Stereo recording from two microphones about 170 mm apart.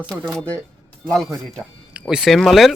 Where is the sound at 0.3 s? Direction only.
5° left (ahead or behind).